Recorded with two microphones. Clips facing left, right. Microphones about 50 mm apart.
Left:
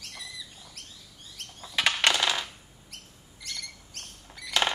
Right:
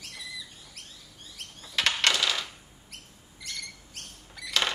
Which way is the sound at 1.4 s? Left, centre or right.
Centre.